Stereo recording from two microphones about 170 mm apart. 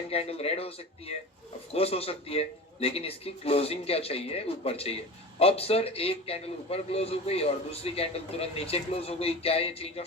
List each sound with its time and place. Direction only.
0.1 s a man's voice: 35° left (ahead or behind)